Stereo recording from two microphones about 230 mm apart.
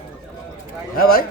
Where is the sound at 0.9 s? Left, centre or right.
Left.